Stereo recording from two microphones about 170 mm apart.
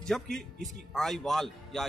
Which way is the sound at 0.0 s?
5° left (ahead or behind).